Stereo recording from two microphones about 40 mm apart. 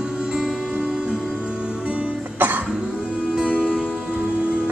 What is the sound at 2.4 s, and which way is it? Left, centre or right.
Cough, right.